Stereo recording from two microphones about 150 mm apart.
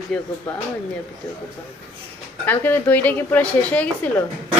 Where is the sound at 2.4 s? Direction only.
10° left (ahead or behind).